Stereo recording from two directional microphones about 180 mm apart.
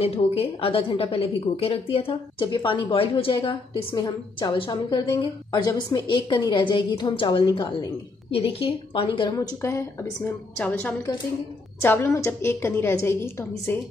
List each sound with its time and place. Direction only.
0.4 s a woman's voice: 30° left (ahead or behind); by 13.7 s 15° left (ahead or behind)